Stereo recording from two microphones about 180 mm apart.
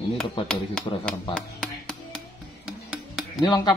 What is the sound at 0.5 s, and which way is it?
Speech, 5° left (ahead or behind).